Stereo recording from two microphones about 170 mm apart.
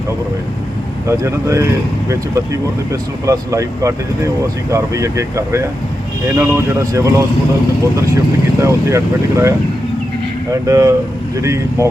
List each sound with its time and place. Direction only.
1.0 s speech: 15° right (ahead or behind)
8.5 s speech: 15° right (ahead or behind)